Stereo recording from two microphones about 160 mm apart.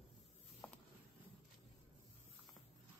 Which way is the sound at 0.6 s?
5° left (ahead or behind).